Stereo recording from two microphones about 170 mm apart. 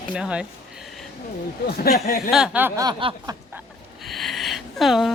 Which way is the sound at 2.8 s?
25° right (ahead or behind).